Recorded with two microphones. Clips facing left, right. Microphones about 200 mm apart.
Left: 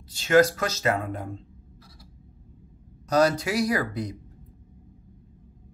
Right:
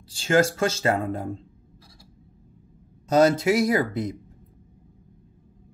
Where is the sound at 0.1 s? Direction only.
30° right (ahead or behind).